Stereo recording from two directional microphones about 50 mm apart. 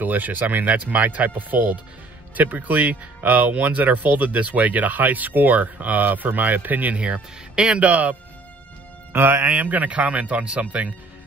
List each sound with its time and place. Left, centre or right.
0.0 s speech: right
7.0 s speech: right
7.8 s speech: right
9.1 s speech: right
9.4 s speech: right